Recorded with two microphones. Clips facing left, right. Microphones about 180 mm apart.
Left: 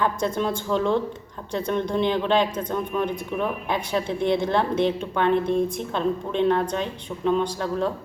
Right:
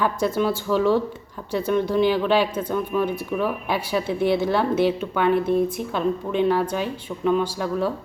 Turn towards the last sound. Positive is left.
turn(degrees=-5)  # may be behind; listen again after turning